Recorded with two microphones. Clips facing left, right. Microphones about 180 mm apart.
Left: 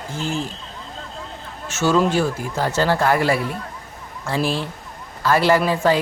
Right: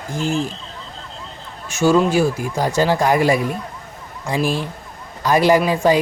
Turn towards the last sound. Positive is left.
turn(degrees=-15)  # may be behind; listen again after turning